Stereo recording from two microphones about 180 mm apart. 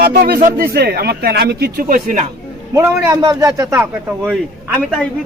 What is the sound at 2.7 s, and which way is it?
Speech, 15° right (ahead or behind).